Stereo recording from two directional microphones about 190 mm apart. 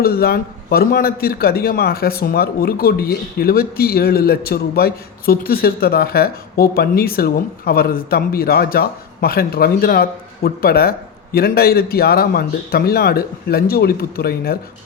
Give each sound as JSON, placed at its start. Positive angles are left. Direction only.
{"t": 0.0, "sound": "a man's voice", "side_deg": 55}